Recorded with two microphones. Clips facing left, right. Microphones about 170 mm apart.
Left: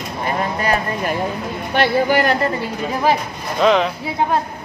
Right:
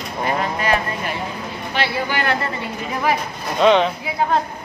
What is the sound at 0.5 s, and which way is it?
Speech, 40° left (ahead or behind).